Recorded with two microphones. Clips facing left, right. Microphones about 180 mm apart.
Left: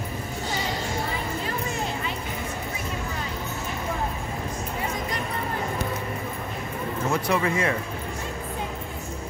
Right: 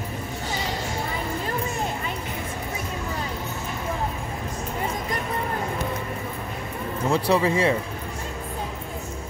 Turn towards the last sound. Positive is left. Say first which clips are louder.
# right 4 dB
turn(degrees=-30)  # may be behind; listen again after turning